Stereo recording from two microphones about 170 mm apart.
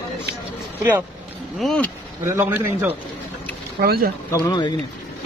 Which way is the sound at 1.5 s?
5° left (ahead or behind).